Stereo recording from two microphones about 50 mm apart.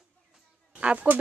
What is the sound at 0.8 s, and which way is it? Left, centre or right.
Speech, right.